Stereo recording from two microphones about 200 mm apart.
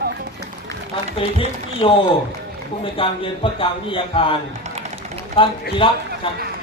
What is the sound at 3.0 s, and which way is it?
Speech, 25° left (ahead or behind).